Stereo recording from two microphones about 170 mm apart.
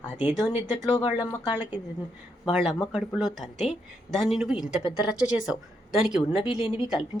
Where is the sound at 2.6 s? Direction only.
Centre (ahead or behind).